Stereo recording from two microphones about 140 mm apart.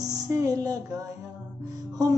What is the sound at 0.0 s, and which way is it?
Music, 25° right (ahead or behind).